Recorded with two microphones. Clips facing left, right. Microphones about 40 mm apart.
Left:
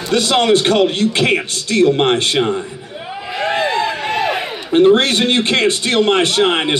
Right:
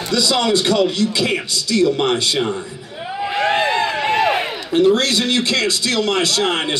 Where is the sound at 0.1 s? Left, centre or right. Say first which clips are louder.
Left 4 dB; left.